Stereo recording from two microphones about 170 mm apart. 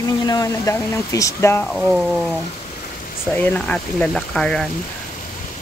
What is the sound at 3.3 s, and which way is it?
Speech, 10° left (ahead or behind).